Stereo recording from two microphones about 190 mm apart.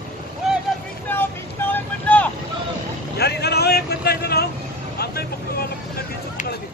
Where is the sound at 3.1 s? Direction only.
60° left (ahead or behind).